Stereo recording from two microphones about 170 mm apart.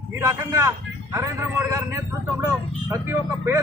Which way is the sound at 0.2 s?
15° right (ahead or behind).